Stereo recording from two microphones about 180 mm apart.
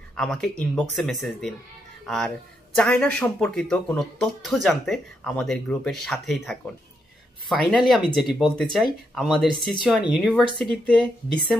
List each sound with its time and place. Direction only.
0.1 s speech: 5° left (ahead or behind)